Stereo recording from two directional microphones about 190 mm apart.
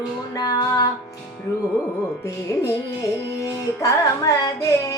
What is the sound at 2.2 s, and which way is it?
Female singing, 15° left (ahead or behind).